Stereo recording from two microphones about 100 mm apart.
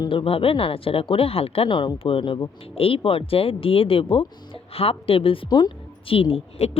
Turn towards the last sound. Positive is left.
turn(degrees=70)  # may be behind; listen again after turning